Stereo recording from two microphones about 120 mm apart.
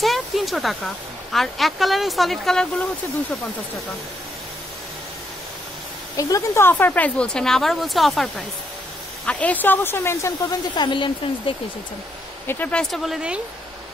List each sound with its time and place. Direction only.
0.0 s speech: centre (ahead or behind)
6.1 s a woman's voice: 25° left (ahead or behind); by 11.5 s 40° left (ahead or behind)
12.4 s speech: 15° left (ahead or behind)
12.9 s speech: centre (ahead or behind)